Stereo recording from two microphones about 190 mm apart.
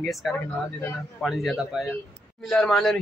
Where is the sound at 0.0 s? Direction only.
Centre (ahead or behind).